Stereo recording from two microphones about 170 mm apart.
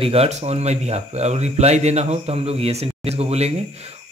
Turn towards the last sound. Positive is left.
turn(degrees=-40)  # may be behind; listen again after turning